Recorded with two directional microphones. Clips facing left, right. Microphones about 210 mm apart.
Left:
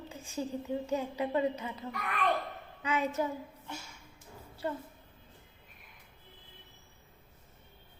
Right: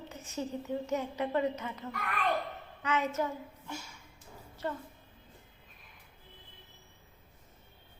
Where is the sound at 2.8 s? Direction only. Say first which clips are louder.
Even; 15° left (ahead or behind).